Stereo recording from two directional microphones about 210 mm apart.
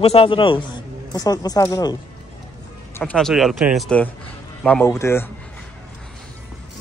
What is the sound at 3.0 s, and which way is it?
Speech, centre (ahead or behind).